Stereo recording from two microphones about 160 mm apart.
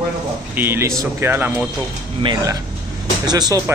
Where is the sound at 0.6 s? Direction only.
15° right (ahead or behind).